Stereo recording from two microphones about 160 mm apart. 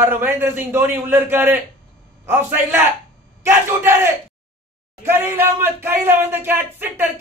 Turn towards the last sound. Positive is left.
turn(degrees=-10)  # may be behind; listen again after turning